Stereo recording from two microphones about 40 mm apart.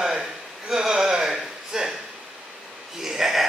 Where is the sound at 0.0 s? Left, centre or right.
Centre.